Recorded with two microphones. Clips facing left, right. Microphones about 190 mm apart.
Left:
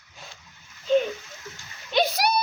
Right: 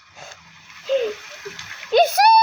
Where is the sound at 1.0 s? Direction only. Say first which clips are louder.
Right 7 dB; 70° right (ahead or behind).